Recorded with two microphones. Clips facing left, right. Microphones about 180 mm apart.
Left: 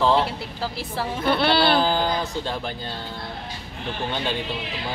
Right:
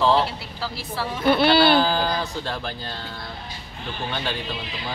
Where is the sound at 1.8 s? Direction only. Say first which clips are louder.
Even; 15° left (ahead or behind).